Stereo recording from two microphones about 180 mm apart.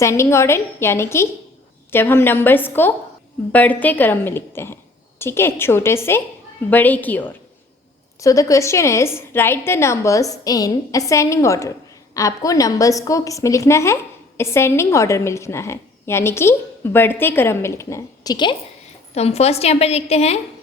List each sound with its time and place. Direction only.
0.0 s a woman's voice: 15° left (ahead or behind)
19.1 s a woman's voice: 35° left (ahead or behind)